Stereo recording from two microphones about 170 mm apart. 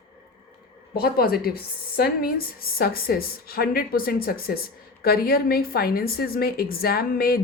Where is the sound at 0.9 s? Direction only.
65° left (ahead or behind).